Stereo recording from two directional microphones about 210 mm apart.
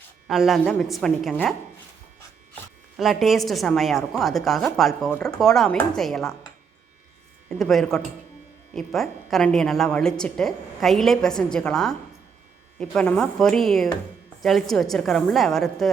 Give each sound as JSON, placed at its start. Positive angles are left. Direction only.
{"t": 0.3, "sound": "a woman's voice", "side_deg": 0}
{"t": 3.0, "sound": "a woman's voice", "side_deg": 0}
{"t": 7.6, "sound": "a woman's voice", "side_deg": 0}